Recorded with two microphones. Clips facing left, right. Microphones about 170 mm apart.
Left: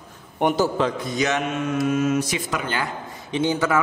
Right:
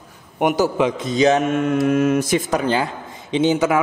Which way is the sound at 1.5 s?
55° right (ahead or behind).